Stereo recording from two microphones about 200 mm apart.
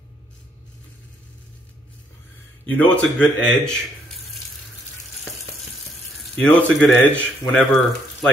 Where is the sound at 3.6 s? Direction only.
Centre (ahead or behind).